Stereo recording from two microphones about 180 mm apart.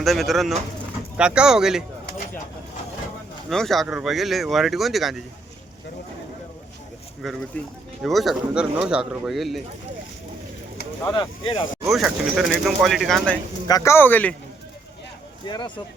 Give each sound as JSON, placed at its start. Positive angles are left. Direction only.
{"t": 0.0, "sound": "speech", "side_deg": 0}
{"t": 3.5, "sound": "speech", "side_deg": 0}
{"t": 7.2, "sound": "speech", "side_deg": 0}
{"t": 11.1, "sound": "speech", "side_deg": 25}
{"t": 11.9, "sound": "speech", "side_deg": 0}
{"t": 13.7, "sound": "speech", "side_deg": 20}
{"t": 15.4, "sound": "speech", "side_deg": 25}